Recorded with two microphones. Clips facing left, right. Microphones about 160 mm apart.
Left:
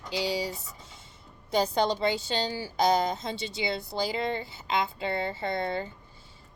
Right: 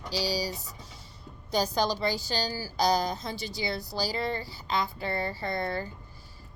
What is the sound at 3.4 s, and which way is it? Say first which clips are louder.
Speech: left 2 dB; 70° left (ahead or behind).